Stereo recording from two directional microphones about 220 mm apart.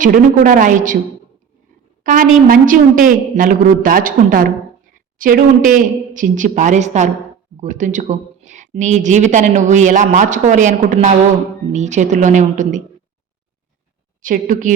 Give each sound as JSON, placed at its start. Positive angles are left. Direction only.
{"t": 0.0, "sound": "speech", "side_deg": -35}
{"t": 2.0, "sound": "speech", "side_deg": -40}
{"t": 14.2, "sound": "speech", "side_deg": -35}